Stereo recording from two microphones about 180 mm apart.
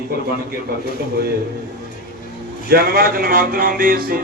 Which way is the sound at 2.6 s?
60° right (ahead or behind).